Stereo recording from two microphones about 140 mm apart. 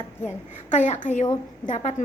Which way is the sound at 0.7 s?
60° left (ahead or behind).